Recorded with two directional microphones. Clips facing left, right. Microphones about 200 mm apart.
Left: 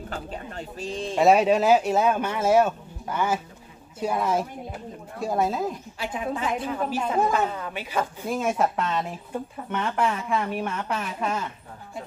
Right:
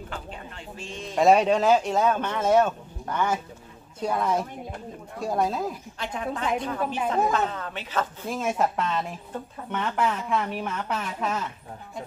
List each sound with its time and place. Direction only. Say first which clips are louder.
0.1 s bird: left 4 dB; 40° left (ahead or behind)
1.1 s speech: even; 5° left (ahead or behind)